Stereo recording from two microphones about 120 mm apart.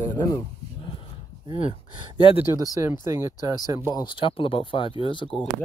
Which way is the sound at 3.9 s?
40° left (ahead or behind).